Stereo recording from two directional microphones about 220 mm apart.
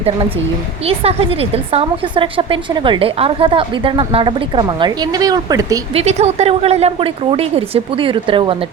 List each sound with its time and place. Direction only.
0.9 s a woman's voice: 25° right (ahead or behind)
5.9 s a woman's voice: 30° right (ahead or behind)